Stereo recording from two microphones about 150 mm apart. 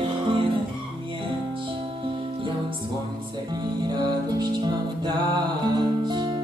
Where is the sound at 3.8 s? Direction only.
30° right (ahead or behind).